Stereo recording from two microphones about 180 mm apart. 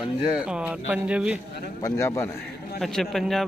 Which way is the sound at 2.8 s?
Centre (ahead or behind).